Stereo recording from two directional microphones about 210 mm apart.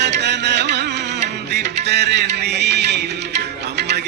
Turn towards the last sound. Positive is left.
turn(degrees=-55)  # may be behind; listen again after turning